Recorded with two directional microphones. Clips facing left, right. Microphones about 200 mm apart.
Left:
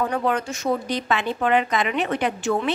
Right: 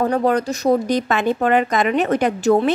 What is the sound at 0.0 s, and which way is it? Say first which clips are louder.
Speech: right 6 dB; 40° right (ahead or behind).